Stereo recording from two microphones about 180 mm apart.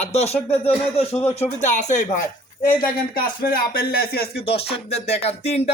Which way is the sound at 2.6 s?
55° left (ahead or behind).